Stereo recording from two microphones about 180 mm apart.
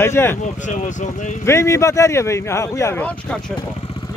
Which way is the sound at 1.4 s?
15° left (ahead or behind).